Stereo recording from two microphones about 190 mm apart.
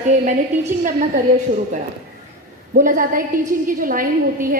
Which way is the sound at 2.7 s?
45° right (ahead or behind).